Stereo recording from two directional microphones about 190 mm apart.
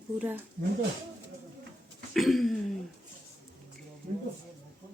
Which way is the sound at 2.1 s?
Centre (ahead or behind).